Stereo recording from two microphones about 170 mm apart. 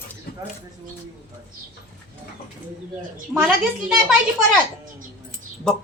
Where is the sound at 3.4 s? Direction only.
5° right (ahead or behind).